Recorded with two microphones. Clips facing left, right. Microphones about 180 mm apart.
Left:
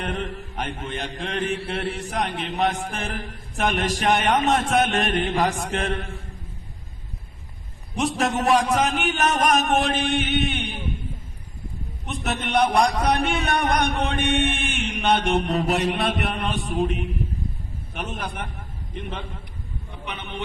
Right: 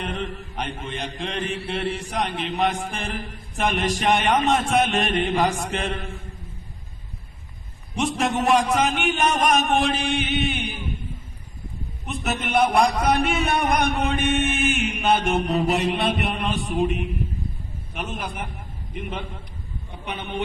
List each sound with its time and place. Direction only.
0.0 s chant: centre (ahead or behind)
7.9 s chant: centre (ahead or behind)
12.0 s chant: centre (ahead or behind)
20.1 s a man's voice: 35° right (ahead or behind)